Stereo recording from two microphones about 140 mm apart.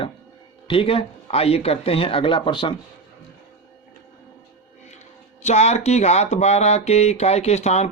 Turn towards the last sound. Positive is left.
turn(degrees=50)  # may be behind; listen again after turning